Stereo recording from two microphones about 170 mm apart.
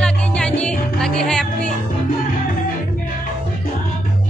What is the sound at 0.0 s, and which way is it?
Music, 5° left (ahead or behind).